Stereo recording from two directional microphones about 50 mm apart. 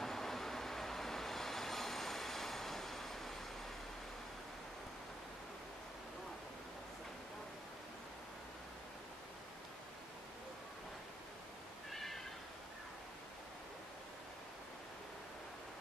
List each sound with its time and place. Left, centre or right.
0.0 s train: centre
11.9 s cat: centre